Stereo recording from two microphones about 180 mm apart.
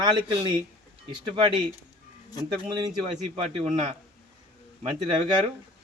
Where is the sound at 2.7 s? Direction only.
25° right (ahead or behind).